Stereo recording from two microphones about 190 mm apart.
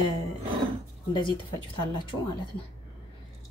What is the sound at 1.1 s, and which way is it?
Speech, 25° left (ahead or behind).